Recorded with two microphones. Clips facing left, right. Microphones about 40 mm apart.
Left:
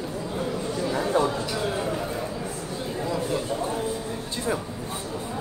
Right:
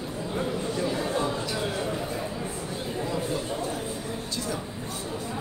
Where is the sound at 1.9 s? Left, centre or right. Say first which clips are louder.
Left 2 dB; centre.